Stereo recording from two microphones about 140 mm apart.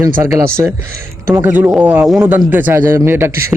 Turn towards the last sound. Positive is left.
turn(degrees=-15)  # may be behind; listen again after turning